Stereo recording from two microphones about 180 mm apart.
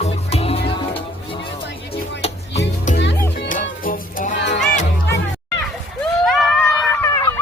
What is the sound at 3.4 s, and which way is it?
Music, 45° left (ahead or behind).